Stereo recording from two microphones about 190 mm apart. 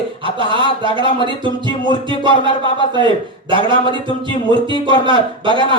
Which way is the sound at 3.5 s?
25° right (ahead or behind).